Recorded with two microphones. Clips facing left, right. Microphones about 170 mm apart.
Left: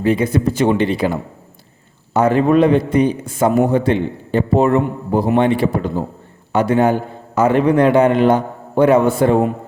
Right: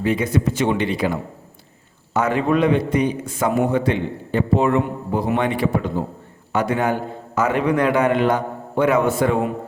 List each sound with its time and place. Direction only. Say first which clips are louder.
0.0 s a man's voice: left 4 dB; 35° left (ahead or behind)